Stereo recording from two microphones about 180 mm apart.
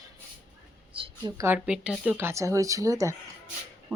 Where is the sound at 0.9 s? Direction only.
25° right (ahead or behind).